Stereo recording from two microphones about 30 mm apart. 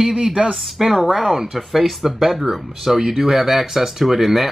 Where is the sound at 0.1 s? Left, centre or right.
Right.